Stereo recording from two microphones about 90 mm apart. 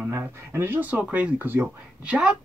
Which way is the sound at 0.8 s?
15° right (ahead or behind).